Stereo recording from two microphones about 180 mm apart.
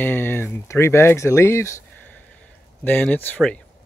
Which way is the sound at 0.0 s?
10° left (ahead or behind).